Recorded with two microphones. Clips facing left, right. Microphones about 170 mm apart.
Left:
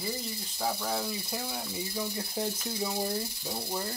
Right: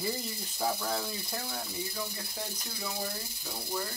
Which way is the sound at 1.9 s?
25° left (ahead or behind).